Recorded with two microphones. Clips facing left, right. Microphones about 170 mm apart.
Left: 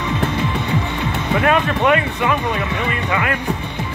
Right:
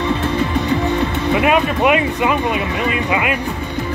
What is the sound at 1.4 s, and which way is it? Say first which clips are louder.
Speech: right 1 dB; 15° right (ahead or behind).